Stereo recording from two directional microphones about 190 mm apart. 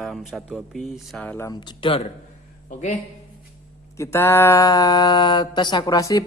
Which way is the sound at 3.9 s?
15° left (ahead or behind).